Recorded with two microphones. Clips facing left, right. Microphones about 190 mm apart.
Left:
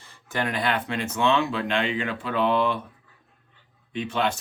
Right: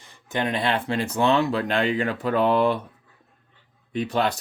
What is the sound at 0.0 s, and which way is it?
Speech, 20° right (ahead or behind).